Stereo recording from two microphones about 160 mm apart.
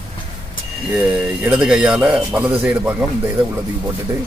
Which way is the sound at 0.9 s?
5° right (ahead or behind).